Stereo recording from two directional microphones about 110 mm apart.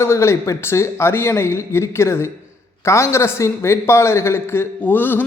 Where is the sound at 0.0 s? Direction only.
25° left (ahead or behind).